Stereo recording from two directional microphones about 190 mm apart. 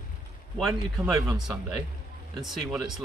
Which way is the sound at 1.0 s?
15° right (ahead or behind).